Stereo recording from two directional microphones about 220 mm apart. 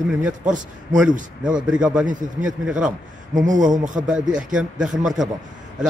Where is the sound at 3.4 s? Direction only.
35° right (ahead or behind).